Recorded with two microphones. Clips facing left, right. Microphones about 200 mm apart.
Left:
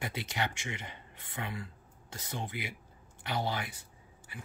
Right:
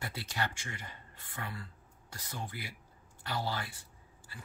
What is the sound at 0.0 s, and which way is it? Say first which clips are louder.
Speech: left 2 dB; 20° left (ahead or behind).